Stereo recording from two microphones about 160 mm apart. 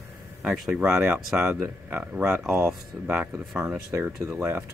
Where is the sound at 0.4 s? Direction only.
5° right (ahead or behind).